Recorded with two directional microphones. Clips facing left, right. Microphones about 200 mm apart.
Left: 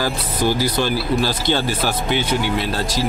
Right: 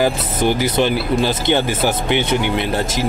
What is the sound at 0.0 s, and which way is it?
Speech, 20° right (ahead or behind).